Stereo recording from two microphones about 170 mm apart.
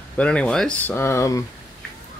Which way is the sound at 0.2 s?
5° left (ahead or behind).